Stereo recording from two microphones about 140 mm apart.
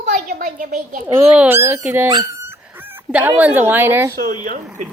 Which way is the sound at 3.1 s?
10° right (ahead or behind).